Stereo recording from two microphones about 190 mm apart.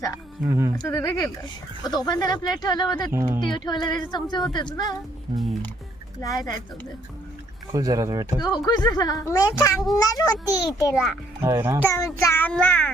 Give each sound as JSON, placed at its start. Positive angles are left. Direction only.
{"t": 0.4, "sound": "speech", "side_deg": -15}
{"t": 0.8, "sound": "child singing", "side_deg": 15}
{"t": 1.8, "sound": "a woman's voice", "side_deg": 20}
{"t": 3.1, "sound": "speech", "side_deg": -15}
{"t": 3.5, "sound": "a woman's voice", "side_deg": 20}
{"t": 6.2, "sound": "a woman's voice", "side_deg": 20}
{"t": 7.7, "sound": "speech", "side_deg": -20}
{"t": 8.4, "sound": "a woman's voice", "side_deg": 20}
{"t": 11.4, "sound": "speech", "side_deg": -15}
{"t": 11.9, "sound": "child singing", "side_deg": 15}